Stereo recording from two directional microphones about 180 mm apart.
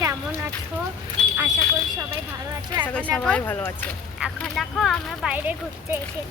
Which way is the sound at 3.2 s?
10° left (ahead or behind).